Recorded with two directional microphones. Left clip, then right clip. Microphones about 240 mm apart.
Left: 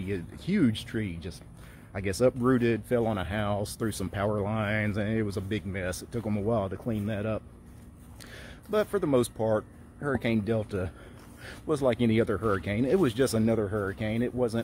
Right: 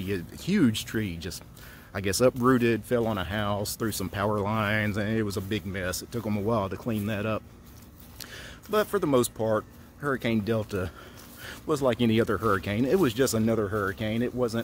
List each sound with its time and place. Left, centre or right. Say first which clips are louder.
0.0 s speech: right 2 dB; centre